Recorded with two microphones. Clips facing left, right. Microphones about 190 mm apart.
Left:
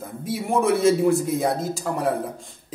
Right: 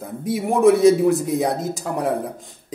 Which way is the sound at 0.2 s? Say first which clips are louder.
Right 6 dB; 20° right (ahead or behind).